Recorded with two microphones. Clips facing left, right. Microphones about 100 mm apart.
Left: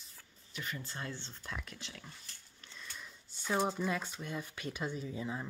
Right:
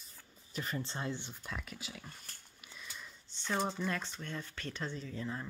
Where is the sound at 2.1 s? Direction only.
50° right (ahead or behind).